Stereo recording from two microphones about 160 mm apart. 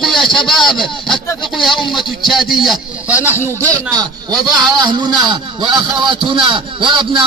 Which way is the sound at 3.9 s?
25° right (ahead or behind).